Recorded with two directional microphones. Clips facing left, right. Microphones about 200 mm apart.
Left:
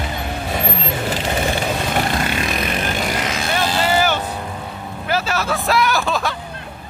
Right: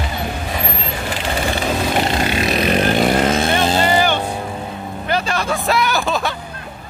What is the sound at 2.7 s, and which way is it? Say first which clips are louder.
Vehicle: right 7 dB; 40° right (ahead or behind).